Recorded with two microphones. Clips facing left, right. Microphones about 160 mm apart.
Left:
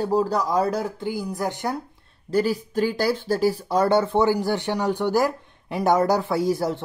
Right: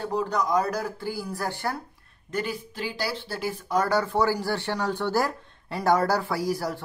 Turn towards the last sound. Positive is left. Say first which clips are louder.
# left 5 dB
turn(degrees=25)  # may be behind; listen again after turning